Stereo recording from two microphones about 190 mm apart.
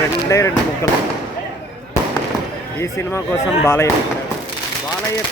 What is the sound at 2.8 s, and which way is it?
Speech, 15° left (ahead or behind).